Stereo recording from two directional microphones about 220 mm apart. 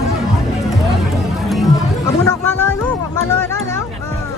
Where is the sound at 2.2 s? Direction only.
10° left (ahead or behind).